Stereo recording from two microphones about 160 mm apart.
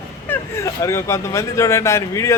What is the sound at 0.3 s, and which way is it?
Speech, 15° left (ahead or behind).